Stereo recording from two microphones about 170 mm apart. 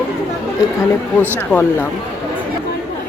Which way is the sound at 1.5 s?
15° left (ahead or behind).